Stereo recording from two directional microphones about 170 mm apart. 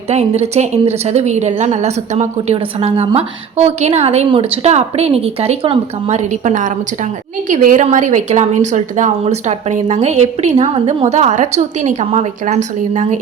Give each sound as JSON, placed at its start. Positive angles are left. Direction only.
{"t": 0.1, "sound": "a woman's voice", "side_deg": -40}